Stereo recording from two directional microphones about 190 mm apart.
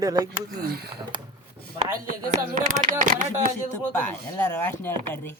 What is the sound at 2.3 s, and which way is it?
Speech, 40° right (ahead or behind).